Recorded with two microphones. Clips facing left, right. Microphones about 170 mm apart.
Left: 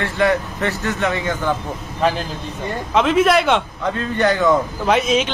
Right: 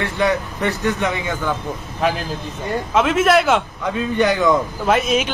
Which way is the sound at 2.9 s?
Centre (ahead or behind).